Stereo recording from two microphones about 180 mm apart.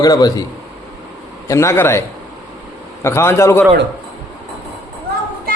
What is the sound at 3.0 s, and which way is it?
Speech, 15° left (ahead or behind).